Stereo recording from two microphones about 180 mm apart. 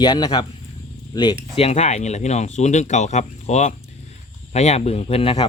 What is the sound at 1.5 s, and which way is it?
Speech, 35° left (ahead or behind).